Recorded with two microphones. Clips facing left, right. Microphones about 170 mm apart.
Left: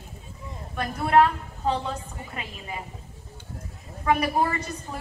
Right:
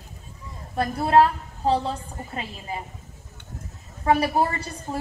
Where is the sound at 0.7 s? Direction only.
30° right (ahead or behind).